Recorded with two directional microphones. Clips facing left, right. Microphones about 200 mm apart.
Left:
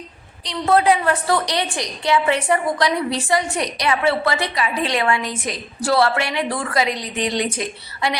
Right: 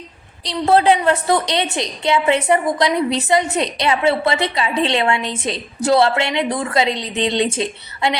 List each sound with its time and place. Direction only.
0.4 s a woman's voice: 30° right (ahead or behind)